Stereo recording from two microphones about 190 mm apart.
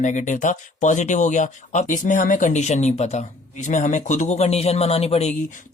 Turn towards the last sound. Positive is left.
turn(degrees=35)  # may be behind; listen again after turning